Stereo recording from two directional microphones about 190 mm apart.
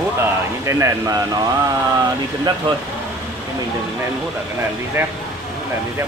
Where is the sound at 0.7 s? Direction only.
15° right (ahead or behind).